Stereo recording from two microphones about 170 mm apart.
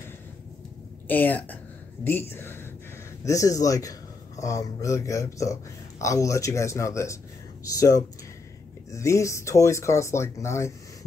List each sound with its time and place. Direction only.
1.0 s a man's voice: 10° left (ahead or behind)